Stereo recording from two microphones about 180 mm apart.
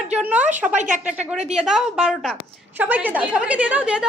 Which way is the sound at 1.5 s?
5° right (ahead or behind).